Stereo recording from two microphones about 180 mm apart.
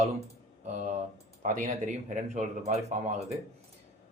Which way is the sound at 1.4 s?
40° right (ahead or behind).